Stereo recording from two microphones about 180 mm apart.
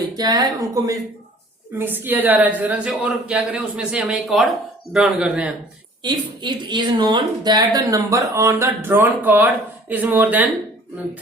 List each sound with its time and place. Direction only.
0.2 s a woman's voice: 20° right (ahead or behind); by 5.5 s 5° right (ahead or behind)
6.0 s a woman's voice: 25° right (ahead or behind); by 10.5 s 10° right (ahead or behind)